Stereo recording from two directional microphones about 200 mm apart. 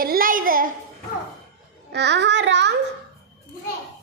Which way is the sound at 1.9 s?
60° right (ahead or behind).